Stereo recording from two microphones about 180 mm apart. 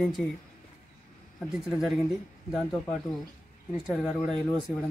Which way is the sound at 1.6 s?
Centre (ahead or behind).